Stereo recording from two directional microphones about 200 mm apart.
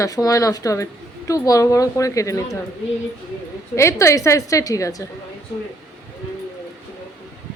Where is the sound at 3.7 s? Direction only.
15° left (ahead or behind).